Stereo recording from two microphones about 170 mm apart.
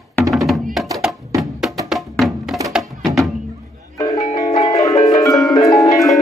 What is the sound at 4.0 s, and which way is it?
Music, 20° left (ahead or behind).